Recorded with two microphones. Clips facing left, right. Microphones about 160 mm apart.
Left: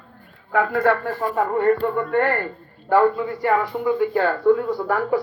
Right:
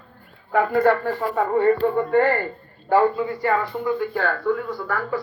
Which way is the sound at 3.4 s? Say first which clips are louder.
Left 3 dB; 10° left (ahead or behind).